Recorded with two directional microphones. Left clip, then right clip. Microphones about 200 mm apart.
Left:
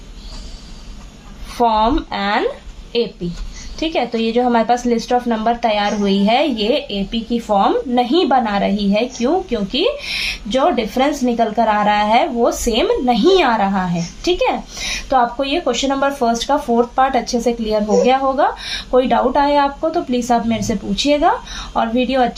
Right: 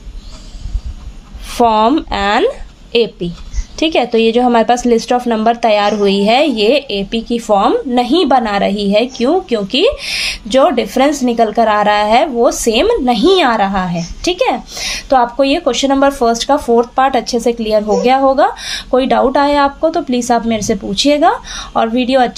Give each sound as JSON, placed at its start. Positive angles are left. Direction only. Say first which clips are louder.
{"t": 1.5, "sound": "a woman's voice", "louder": "right 4 dB", "side_deg": -40}